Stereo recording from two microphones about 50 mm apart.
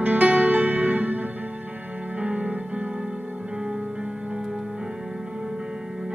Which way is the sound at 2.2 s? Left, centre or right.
Right.